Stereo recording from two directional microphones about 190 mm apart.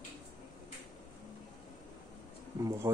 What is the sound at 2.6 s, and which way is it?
Speech, 15° right (ahead or behind).